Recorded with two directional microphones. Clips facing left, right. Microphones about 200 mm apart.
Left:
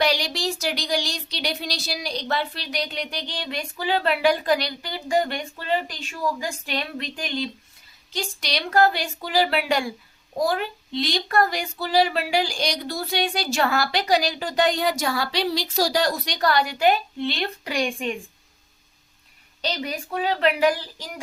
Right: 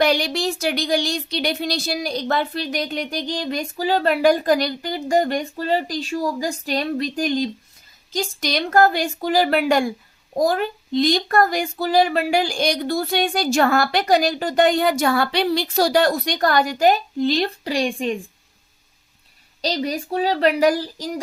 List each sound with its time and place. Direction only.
0.0 s speech: 55° right (ahead or behind); by 18.2 s 35° right (ahead or behind)
19.6 s a woman's voice: 35° right (ahead or behind)